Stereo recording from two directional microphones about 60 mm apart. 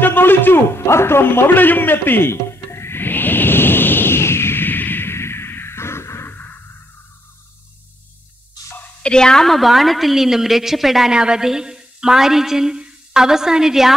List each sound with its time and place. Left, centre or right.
0.0 s music: left
6.3 s a sound: left
9.0 s a woman's voice: centre